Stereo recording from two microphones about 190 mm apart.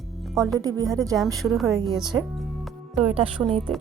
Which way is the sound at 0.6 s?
20° right (ahead or behind).